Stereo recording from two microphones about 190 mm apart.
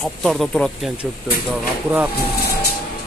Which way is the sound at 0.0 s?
Centre (ahead or behind).